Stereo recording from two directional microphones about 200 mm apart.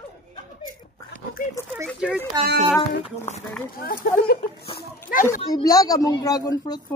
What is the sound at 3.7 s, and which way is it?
Speech, 50° left (ahead or behind).